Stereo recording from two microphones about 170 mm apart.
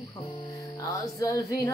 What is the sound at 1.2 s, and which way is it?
Music, 20° left (ahead or behind).